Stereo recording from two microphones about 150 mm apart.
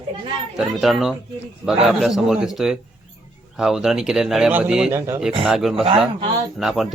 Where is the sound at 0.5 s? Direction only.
Centre (ahead or behind).